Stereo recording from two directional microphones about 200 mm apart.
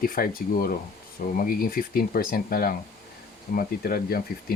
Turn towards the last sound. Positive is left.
turn(degrees=50)  # may be behind; listen again after turning